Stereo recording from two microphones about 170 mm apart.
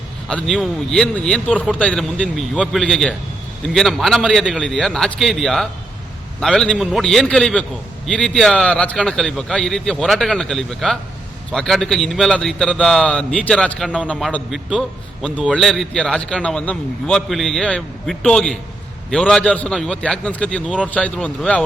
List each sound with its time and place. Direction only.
0.3 s a man's voice: 5° left (ahead or behind)
20.7 s a man's voice: 5° right (ahead or behind)
20.9 s speech: 10° left (ahead or behind)